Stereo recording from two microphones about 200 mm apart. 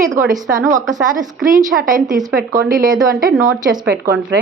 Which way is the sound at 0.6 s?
15° right (ahead or behind).